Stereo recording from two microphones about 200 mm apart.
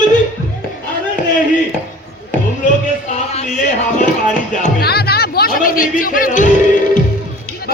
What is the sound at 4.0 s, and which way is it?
Music, 40° left (ahead or behind).